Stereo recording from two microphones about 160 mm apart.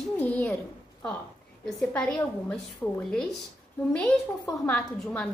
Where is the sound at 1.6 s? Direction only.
5° left (ahead or behind).